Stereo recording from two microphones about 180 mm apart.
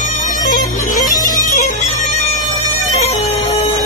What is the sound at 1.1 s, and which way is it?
Music, 45° left (ahead or behind).